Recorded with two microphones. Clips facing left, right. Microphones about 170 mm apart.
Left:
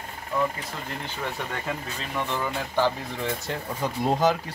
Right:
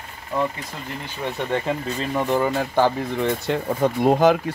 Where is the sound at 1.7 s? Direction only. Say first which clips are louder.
Right 7 dB; 25° right (ahead or behind).